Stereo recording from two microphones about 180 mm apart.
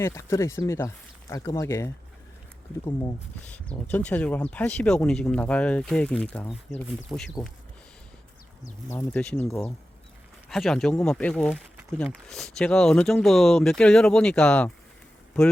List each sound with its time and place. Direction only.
0.0 s speech: 15° left (ahead or behind)
3.5 s speech: 10° left (ahead or behind)
8.9 s speech: 10° left (ahead or behind)